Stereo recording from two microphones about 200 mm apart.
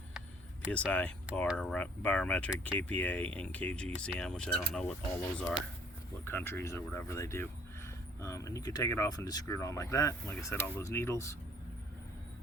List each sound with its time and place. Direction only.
0.7 s speech: 5° left (ahead or behind)